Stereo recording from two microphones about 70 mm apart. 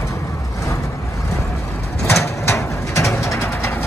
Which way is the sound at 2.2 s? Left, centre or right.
Left.